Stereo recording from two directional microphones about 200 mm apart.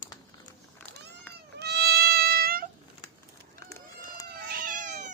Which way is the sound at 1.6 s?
55° right (ahead or behind).